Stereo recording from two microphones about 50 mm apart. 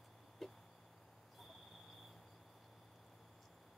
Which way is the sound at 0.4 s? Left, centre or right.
Centre.